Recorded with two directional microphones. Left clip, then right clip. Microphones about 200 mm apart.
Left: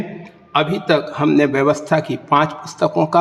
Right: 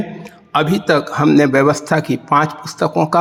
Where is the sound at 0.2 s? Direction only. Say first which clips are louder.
Right 1 dB; 40° right (ahead or behind).